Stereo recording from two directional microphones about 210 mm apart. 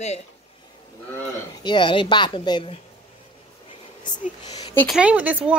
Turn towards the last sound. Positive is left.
turn(degrees=-5)  # may be behind; listen again after turning